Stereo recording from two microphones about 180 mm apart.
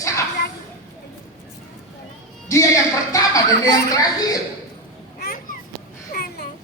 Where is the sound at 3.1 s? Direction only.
20° left (ahead or behind).